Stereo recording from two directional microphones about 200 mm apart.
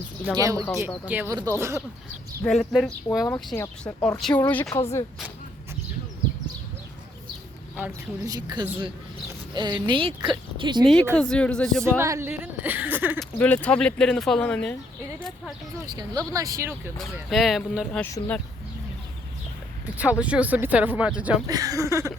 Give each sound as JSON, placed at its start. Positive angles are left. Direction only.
{"t": 0.3, "sound": "speech", "side_deg": -15}
{"t": 2.4, "sound": "speech", "side_deg": 0}
{"t": 3.2, "sound": "speech", "side_deg": 10}
{"t": 7.8, "sound": "speech", "side_deg": -20}
{"t": 10.8, "sound": "speech", "side_deg": 5}
{"t": 11.8, "sound": "speech", "side_deg": -15}
{"t": 13.1, "sound": "speech", "side_deg": 5}
{"t": 16.0, "sound": "speech", "side_deg": -15}
{"t": 17.2, "sound": "speech", "side_deg": 0}
{"t": 18.0, "sound": "speech", "side_deg": 10}
{"t": 20.0, "sound": "speech", "side_deg": -5}
{"t": 21.5, "sound": "speech", "side_deg": -20}